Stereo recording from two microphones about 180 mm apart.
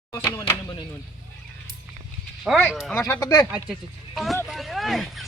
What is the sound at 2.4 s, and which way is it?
Speech, centre (ahead or behind).